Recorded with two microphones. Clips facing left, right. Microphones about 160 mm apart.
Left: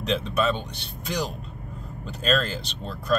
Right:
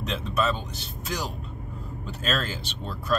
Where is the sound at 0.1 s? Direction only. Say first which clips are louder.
Left 3 dB; centre (ahead or behind).